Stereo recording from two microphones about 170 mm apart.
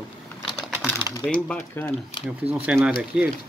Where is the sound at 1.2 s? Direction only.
5° left (ahead or behind).